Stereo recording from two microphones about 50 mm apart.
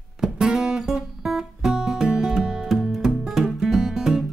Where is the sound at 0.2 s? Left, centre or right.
Centre.